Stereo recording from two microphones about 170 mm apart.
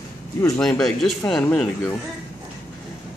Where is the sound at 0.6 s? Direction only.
5° left (ahead or behind).